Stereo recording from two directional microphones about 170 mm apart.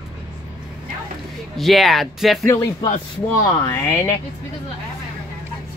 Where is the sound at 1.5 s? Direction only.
Centre (ahead or behind).